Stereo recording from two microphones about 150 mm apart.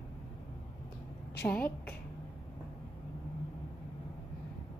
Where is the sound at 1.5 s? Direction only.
10° left (ahead or behind).